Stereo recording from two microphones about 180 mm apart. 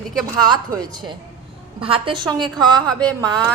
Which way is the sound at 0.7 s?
20° right (ahead or behind).